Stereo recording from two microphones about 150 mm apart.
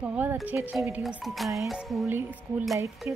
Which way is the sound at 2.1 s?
15° right (ahead or behind).